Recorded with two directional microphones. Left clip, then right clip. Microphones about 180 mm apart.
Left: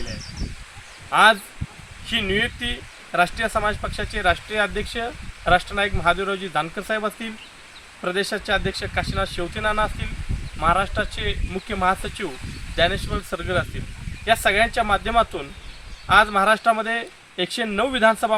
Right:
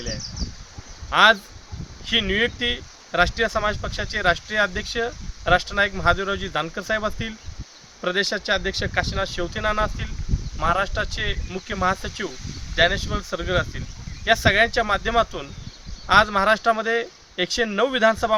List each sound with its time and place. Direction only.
1.1 s speech: 30° right (ahead or behind)